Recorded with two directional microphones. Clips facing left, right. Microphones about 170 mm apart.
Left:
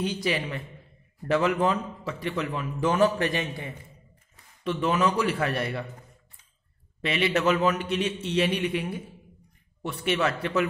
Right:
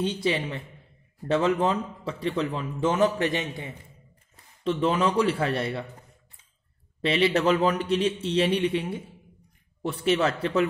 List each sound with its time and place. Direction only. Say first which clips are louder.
0.0 s speech: right 2 dB; 25° right (ahead or behind)
7.0 s a man's voice: right 3 dB; 30° right (ahead or behind)